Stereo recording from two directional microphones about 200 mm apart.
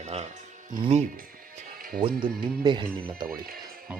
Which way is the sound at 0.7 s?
35° right (ahead or behind).